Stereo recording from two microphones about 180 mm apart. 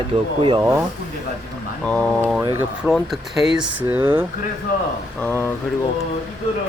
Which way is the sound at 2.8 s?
Centre (ahead or behind).